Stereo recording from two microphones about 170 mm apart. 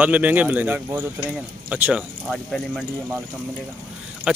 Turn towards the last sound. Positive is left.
turn(degrees=-5)  # may be behind; listen again after turning